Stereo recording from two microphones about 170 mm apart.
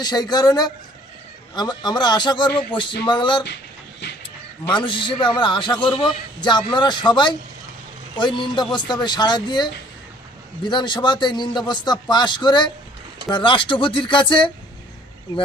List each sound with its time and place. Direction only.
0.0 s a man's voice: 25° left (ahead or behind)
4.7 s a man's voice: 30° left (ahead or behind)